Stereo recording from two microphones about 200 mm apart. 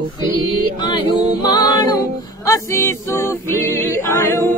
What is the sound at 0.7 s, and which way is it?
Female singing, 20° left (ahead or behind).